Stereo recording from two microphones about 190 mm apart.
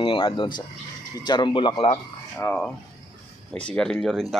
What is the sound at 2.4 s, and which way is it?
Speech, 5° left (ahead or behind).